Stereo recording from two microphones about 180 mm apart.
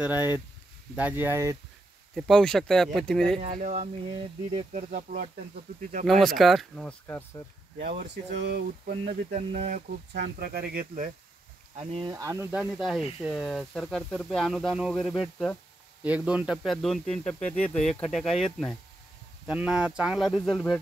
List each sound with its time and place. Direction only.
0.0 s speech: 10° right (ahead or behind)
2.1 s speech: centre (ahead or behind)
3.5 s speech: 45° right (ahead or behind)
5.8 s speech: 45° right (ahead or behind)
6.0 s speech: centre (ahead or behind)
8.4 s a sound: 65° right (ahead or behind)
9.5 s speech: 45° right (ahead or behind)
11.7 s speech: 30° right (ahead or behind); by 20.8 s centre (ahead or behind)